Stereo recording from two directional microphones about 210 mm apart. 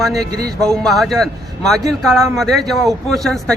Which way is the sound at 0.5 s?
Centre (ahead or behind).